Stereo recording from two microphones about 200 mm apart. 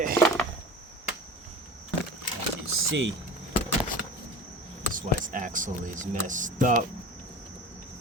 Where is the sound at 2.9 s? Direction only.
70° right (ahead or behind).